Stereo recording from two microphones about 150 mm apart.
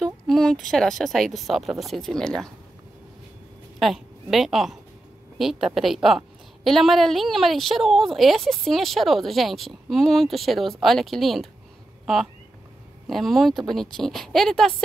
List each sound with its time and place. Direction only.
0.0 s a woman's voice: 5° left (ahead or behind)
3.8 s a woman's voice: centre (ahead or behind)
13.0 s a woman's voice: centre (ahead or behind)